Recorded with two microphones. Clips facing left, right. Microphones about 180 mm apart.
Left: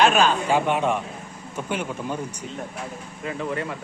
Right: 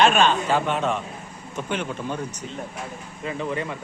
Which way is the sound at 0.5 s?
15° left (ahead or behind).